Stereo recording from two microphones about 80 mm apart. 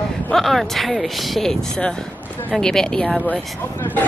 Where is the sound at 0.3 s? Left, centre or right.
Centre.